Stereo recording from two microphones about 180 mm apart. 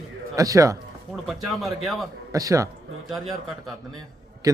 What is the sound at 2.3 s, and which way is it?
Speech, 20° right (ahead or behind).